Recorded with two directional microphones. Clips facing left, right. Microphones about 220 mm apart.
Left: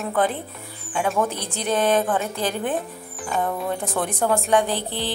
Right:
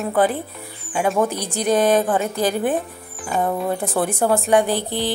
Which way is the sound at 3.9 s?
10° right (ahead or behind).